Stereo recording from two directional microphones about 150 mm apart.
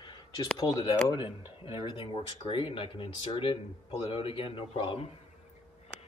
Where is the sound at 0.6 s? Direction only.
25° left (ahead or behind).